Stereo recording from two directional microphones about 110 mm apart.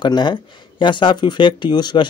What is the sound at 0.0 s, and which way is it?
Speech, 45° left (ahead or behind).